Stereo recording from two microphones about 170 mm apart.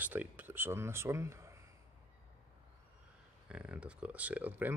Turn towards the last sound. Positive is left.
turn(degrees=-10)  # may be behind; listen again after turning